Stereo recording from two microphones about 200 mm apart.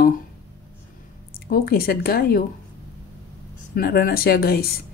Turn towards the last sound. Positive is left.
turn(degrees=50)  # may be behind; listen again after turning